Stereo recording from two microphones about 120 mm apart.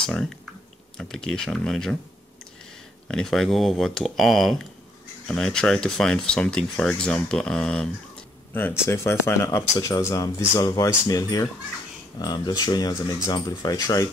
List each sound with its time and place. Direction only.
0.0 s speech: 5° left (ahead or behind)
3.1 s speech: 5° left (ahead or behind)
8.8 s speech: 20° left (ahead or behind)